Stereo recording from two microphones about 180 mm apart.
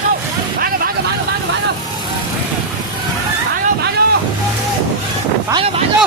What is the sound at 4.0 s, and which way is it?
Boat, 55° right (ahead or behind).